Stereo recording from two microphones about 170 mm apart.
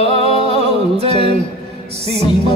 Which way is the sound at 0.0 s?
35° right (ahead or behind).